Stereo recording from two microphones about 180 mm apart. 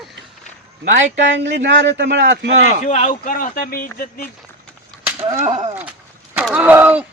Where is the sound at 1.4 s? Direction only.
80° right.